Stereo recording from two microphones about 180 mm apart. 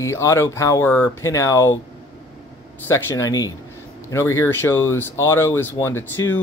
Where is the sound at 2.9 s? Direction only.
15° left (ahead or behind).